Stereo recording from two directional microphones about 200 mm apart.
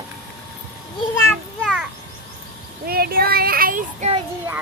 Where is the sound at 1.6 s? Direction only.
Centre (ahead or behind).